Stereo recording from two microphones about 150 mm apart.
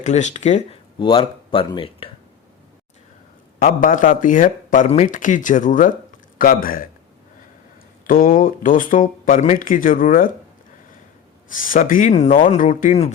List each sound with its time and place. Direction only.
0.0 s speech: 50° left (ahead or behind)
0.9 s speech: 35° left (ahead or behind)
3.6 s speech: 65° left (ahead or behind)
8.0 s speech: 70° left (ahead or behind)
11.4 s speech: 65° left (ahead or behind)